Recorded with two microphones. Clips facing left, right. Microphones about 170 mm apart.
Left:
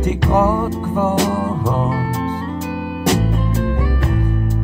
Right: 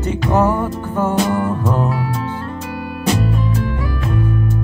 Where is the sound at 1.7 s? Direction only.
25° left (ahead or behind).